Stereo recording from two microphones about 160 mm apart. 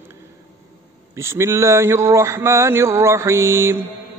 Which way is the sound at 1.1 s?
15° right (ahead or behind).